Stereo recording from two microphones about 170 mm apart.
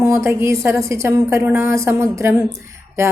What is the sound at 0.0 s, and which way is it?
A woman's voice, 15° right (ahead or behind).